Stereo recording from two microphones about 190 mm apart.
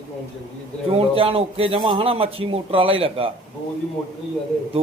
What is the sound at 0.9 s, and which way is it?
A man's voice, 30° right (ahead or behind).